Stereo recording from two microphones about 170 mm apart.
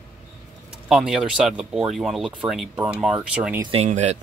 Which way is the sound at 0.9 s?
Centre (ahead or behind).